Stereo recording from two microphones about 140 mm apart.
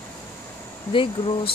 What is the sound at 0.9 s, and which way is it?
Speech, 40° left (ahead or behind).